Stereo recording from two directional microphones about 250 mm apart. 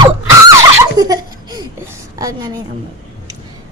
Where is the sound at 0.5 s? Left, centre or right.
Centre.